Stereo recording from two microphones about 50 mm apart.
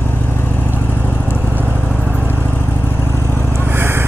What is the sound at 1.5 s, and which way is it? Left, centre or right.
Vehicle, right.